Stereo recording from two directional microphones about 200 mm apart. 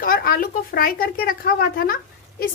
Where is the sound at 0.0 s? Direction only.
45° left (ahead or behind).